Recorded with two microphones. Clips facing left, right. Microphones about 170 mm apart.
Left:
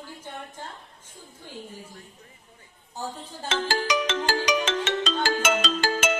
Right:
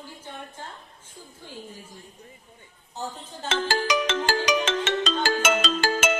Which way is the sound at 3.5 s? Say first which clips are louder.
Right 1 dB; 50° right (ahead or behind).